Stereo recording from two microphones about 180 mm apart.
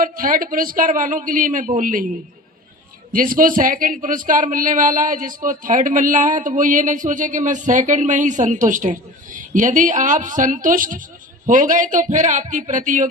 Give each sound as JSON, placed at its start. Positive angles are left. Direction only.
{"t": 0.0, "sound": "speech", "side_deg": -50}
{"t": 3.1, "sound": "speech", "side_deg": -50}